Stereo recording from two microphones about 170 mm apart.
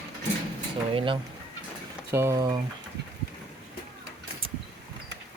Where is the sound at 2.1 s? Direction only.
15° right (ahead or behind).